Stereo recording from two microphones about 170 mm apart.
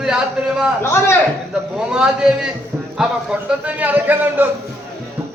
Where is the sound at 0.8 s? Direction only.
15° left (ahead or behind).